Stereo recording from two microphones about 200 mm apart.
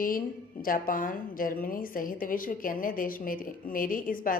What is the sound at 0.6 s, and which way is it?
A woman's voice, 45° left (ahead or behind).